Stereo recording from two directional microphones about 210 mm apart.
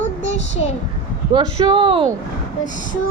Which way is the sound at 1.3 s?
20° right (ahead or behind).